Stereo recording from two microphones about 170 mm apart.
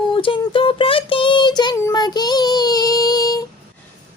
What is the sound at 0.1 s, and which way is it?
Child singing, 30° left (ahead or behind).